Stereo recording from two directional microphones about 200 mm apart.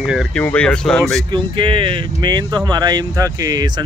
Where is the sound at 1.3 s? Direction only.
25° right (ahead or behind).